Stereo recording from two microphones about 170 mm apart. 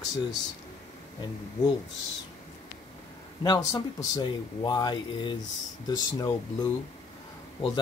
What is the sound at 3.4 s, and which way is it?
Speech, 20° left (ahead or behind).